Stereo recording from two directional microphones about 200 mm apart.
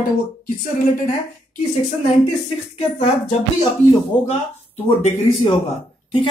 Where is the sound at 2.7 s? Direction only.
30° left (ahead or behind).